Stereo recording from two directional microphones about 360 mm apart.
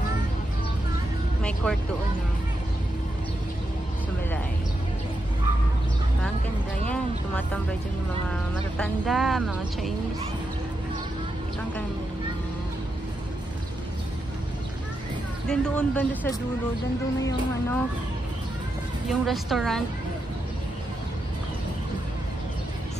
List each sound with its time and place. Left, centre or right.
1.4 s speech: centre
6.9 s speech: centre
15.4 s speech: centre
19.0 s speech: centre